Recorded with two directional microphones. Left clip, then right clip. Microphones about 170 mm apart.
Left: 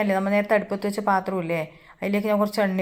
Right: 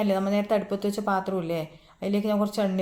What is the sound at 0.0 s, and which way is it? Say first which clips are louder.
A woman's voice: left 3 dB; 10° left (ahead or behind).